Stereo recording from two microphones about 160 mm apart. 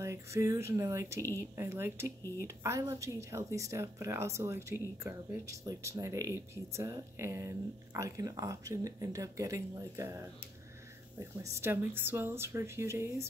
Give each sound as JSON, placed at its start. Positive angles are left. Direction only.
{"t": 0.0, "sound": "speech", "side_deg": -20}